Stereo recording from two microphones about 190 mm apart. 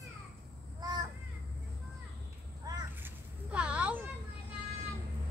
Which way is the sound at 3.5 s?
5° right (ahead or behind).